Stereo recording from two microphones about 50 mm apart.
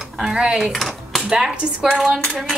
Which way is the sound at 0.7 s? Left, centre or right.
Centre.